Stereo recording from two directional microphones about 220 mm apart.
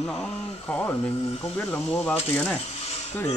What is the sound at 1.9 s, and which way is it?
Speech, 5° left (ahead or behind).